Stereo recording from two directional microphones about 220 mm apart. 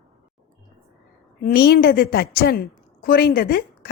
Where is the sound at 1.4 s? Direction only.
45° left (ahead or behind).